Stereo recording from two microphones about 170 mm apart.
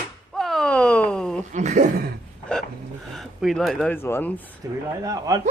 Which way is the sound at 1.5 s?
45° right (ahead or behind).